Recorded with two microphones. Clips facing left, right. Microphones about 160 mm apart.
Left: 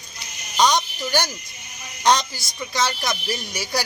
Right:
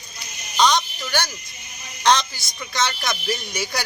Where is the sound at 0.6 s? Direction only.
10° left (ahead or behind).